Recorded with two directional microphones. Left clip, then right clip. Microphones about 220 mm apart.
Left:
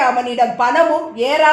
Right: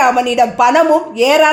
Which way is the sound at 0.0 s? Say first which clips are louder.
Right 4 dB; 50° right (ahead or behind).